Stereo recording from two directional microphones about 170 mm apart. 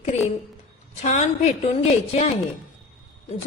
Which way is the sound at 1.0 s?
45° left (ahead or behind).